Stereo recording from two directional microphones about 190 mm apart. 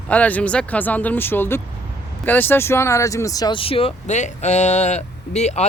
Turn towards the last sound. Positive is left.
turn(degrees=35)  # may be behind; listen again after turning